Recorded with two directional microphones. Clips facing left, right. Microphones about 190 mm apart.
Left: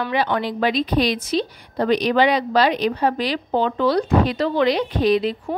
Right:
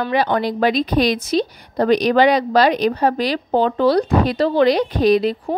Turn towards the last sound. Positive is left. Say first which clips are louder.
# right 3 dB
turn(degrees=-40)  # may be behind; listen again after turning